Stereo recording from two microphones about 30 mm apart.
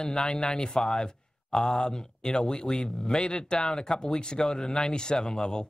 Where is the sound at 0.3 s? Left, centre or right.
Left; by 4.9 s centre.